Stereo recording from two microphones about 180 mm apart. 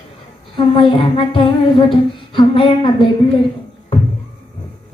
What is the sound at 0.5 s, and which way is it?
Humming, 30° left (ahead or behind).